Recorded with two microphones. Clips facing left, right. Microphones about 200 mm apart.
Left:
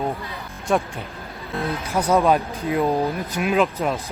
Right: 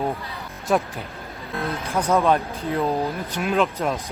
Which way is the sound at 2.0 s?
10° left (ahead or behind).